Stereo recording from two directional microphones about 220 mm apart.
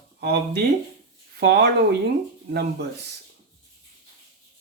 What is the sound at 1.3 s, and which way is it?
Speech, 45° right (ahead or behind).